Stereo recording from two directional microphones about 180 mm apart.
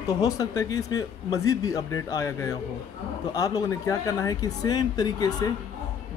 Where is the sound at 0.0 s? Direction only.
20° left (ahead or behind).